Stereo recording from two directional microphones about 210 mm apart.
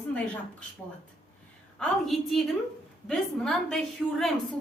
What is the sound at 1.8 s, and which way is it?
A woman's voice, centre (ahead or behind).